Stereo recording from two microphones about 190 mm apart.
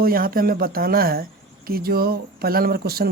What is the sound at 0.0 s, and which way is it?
Speech, 50° right (ahead or behind).